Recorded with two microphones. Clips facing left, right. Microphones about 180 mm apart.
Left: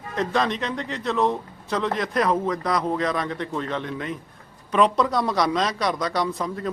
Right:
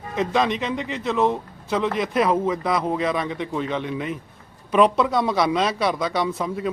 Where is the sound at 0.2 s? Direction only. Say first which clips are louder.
Right 2 dB; centre (ahead or behind).